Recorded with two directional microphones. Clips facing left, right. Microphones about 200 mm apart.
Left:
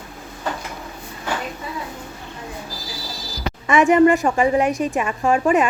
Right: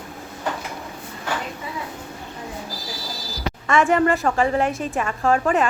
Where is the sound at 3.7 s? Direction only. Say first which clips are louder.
Left 5 dB; 15° left (ahead or behind).